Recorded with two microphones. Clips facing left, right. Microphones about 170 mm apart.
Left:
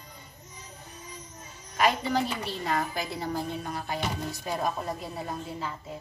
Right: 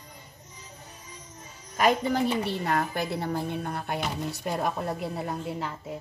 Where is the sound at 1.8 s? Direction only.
50° right (ahead or behind).